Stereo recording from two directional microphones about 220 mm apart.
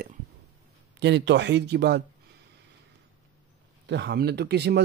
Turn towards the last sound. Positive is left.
turn(degrees=-50)  # may be behind; listen again after turning